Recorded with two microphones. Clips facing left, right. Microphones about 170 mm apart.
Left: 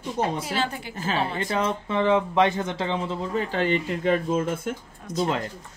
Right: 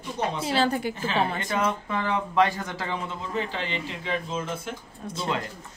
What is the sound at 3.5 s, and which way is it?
A man's voice, 50° left (ahead or behind).